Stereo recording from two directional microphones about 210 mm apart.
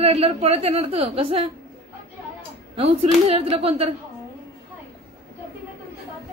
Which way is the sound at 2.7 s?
25° right (ahead or behind).